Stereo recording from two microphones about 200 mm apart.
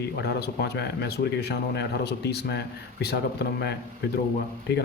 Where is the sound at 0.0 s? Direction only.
55° left (ahead or behind).